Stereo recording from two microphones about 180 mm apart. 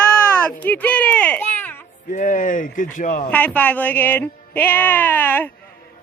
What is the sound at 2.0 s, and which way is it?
Speech, 45° left (ahead or behind).